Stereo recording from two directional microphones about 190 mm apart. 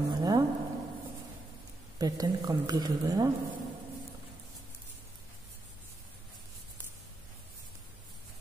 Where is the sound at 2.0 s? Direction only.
20° right (ahead or behind).